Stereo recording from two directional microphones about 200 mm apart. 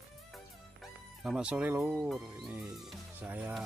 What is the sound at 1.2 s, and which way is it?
Speech, 5° right (ahead or behind).